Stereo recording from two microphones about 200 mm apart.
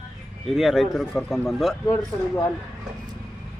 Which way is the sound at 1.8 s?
15° left (ahead or behind).